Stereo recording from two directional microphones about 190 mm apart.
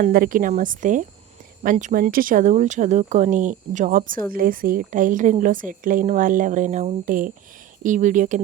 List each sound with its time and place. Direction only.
0.0 s a woman's voice: 50° right (ahead or behind)